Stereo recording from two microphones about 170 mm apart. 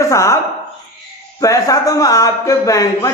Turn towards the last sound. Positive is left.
turn(degrees=20)  # may be behind; listen again after turning